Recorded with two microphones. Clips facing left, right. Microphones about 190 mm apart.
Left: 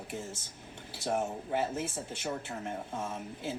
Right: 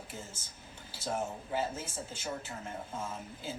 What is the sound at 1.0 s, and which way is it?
Speech, 65° left (ahead or behind).